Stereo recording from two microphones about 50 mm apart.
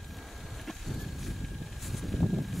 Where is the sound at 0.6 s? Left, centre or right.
Centre.